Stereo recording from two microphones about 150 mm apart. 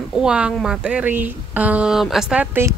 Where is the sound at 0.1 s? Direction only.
5° right (ahead or behind).